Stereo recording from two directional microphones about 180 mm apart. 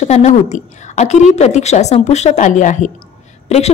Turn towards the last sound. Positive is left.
turn(degrees=35)  # may be behind; listen again after turning